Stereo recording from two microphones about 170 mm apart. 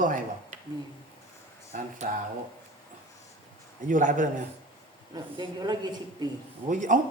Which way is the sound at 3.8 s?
50° right (ahead or behind).